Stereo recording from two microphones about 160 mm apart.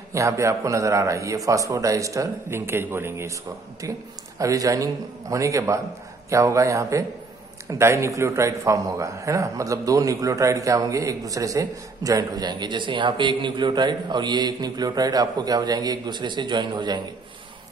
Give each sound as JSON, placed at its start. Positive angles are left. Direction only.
{"t": 0.1, "sound": "a man's voice", "side_deg": -20}
{"t": 4.4, "sound": "a man's voice", "side_deg": -20}